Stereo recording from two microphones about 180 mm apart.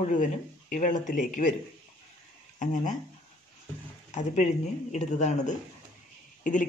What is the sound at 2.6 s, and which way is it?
Speech, 45° left (ahead or behind).